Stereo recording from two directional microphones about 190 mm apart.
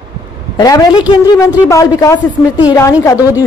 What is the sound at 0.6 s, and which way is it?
A man's voice, 20° left (ahead or behind).